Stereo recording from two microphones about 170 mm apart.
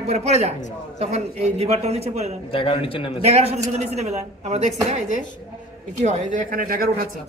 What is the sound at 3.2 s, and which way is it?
Speech, 40° right (ahead or behind).